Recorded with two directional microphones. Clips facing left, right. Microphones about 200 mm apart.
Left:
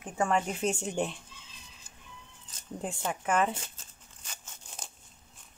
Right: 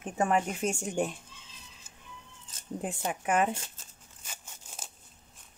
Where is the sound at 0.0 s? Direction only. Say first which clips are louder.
Right 1 dB; 20° right (ahead or behind).